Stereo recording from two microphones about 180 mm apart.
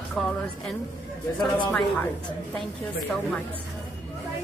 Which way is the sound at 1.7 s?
10° left (ahead or behind).